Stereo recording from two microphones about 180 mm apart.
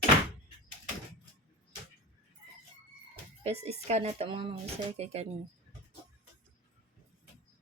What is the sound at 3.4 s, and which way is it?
Speech, 35° right (ahead or behind).